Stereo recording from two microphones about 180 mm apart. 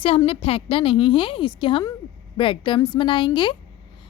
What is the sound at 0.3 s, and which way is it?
A woman's voice, 30° left (ahead or behind).